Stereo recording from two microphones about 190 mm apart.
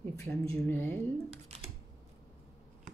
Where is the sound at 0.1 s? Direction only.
15° left (ahead or behind).